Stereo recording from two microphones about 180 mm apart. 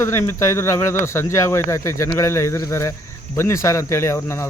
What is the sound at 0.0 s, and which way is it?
Speech, 15° left (ahead or behind).